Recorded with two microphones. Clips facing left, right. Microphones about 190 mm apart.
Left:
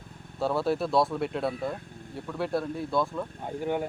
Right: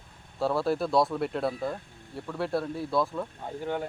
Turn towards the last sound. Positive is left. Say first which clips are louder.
# left 2 dB
turn(degrees=15)  # may be behind; listen again after turning